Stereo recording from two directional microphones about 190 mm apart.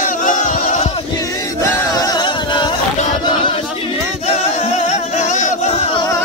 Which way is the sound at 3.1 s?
25° left (ahead or behind).